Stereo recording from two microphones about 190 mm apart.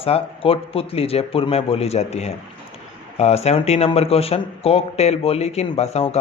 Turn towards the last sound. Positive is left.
turn(degrees=35)  # may be behind; listen again after turning